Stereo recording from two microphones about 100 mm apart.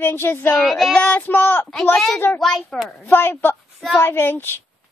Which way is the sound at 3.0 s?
20° left (ahead or behind).